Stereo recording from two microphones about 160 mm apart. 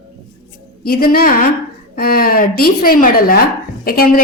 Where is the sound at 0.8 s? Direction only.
70° left (ahead or behind).